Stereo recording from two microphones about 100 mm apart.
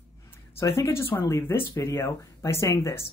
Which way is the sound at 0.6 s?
30° left (ahead or behind).